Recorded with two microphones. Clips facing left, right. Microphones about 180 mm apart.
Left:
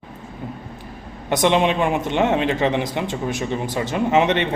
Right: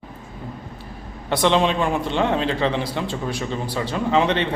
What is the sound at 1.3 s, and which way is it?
A man's voice, 15° left (ahead or behind).